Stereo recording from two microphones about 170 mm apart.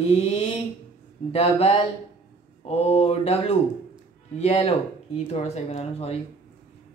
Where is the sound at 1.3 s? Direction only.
35° left (ahead or behind).